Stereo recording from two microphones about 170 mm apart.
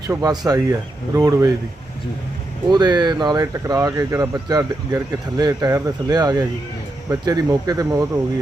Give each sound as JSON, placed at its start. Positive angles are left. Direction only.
{"t": 0.1, "sound": "speech", "side_deg": -20}
{"t": 2.6, "sound": "speech", "side_deg": -25}